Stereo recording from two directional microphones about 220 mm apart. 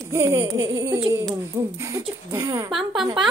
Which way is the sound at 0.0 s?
15° right (ahead or behind).